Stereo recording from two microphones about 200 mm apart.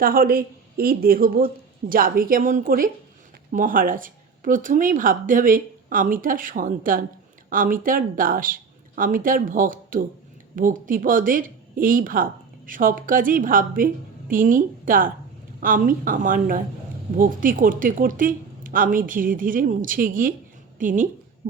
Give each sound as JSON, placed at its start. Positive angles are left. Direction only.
{"t": 0.0, "sound": "a woman's voice", "side_deg": -45}